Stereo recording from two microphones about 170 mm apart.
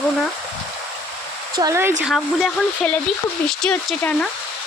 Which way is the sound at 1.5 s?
20° right (ahead or behind).